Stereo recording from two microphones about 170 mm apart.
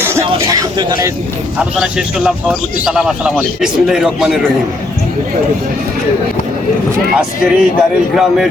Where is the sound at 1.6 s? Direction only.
5° right (ahead or behind).